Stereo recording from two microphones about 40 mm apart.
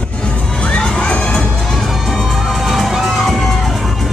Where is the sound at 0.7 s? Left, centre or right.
Left.